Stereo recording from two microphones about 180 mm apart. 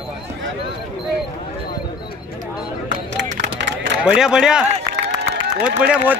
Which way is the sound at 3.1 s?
75° right (ahead or behind).